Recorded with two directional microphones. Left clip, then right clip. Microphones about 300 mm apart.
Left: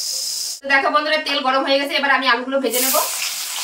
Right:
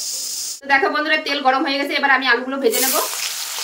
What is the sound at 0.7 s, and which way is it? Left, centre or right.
A woman's voice, centre.